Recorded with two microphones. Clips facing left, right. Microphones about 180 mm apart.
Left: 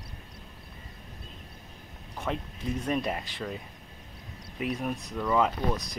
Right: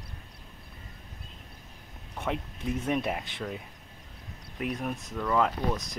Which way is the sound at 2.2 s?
10° right (ahead or behind).